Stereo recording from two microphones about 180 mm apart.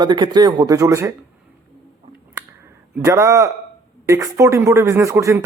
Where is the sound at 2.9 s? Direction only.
15° right (ahead or behind).